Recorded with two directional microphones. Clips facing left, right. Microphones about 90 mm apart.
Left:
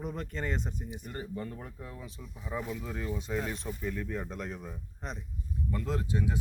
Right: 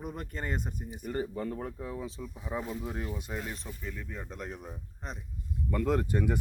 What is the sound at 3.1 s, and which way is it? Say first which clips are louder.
Speech: left 4 dB; 5° right (ahead or behind).